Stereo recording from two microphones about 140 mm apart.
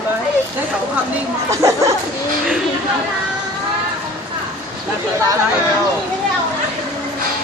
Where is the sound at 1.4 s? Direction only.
20° right (ahead or behind).